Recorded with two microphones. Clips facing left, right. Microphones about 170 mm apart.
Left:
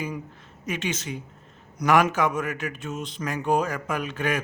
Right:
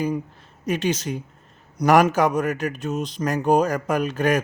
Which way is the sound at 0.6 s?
35° right (ahead or behind).